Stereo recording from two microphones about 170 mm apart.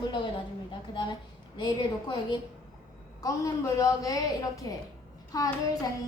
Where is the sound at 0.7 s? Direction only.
25° left (ahead or behind).